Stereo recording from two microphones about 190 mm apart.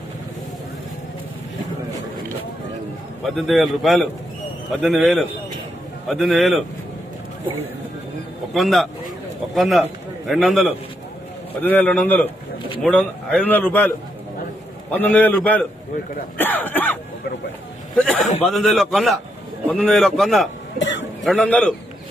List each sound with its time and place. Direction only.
3.2 s a man's voice: centre (ahead or behind)
8.5 s a man's voice: centre (ahead or behind)
18.0 s a man's voice: 5° left (ahead or behind)
20.7 s cough: 70° left (ahead or behind)
21.2 s a man's voice: centre (ahead or behind)